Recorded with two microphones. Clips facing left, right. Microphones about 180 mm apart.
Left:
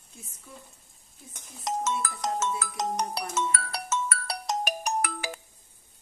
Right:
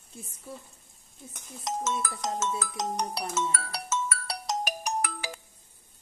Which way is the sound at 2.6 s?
55° left (ahead or behind).